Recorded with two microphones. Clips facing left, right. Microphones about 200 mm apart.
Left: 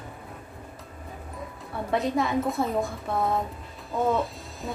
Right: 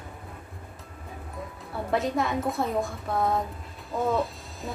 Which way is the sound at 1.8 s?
Centre (ahead or behind).